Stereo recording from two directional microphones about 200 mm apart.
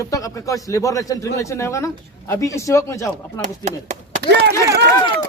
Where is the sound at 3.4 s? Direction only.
35° right (ahead or behind).